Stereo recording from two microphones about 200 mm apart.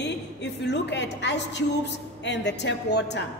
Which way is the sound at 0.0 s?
60° left (ahead or behind).